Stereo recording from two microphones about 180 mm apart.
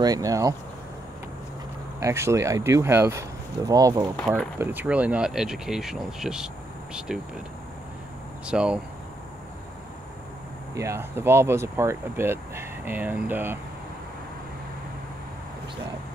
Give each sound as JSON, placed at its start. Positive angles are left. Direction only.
{"t": 0.0, "sound": "speech", "side_deg": -20}
{"t": 2.0, "sound": "speech", "side_deg": -15}
{"t": 4.6, "sound": "speech", "side_deg": -10}
{"t": 8.5, "sound": "speech", "side_deg": -5}
{"t": 10.7, "sound": "speech", "side_deg": -15}